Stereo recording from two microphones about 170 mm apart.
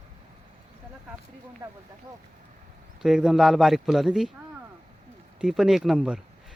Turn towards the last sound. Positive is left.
turn(degrees=-5)  # may be behind; listen again after turning